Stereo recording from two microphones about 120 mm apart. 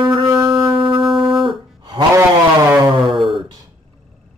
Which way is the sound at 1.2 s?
45° right (ahead or behind).